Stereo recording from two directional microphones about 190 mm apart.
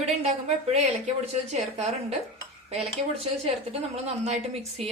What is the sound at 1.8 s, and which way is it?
Speech, 35° right (ahead or behind).